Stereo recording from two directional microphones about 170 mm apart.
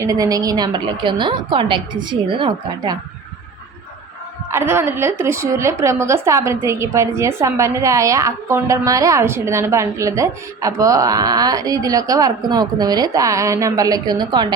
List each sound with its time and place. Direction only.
0.0 s a woman's voice: 20° right (ahead or behind)
4.5 s a woman's voice: 15° right (ahead or behind)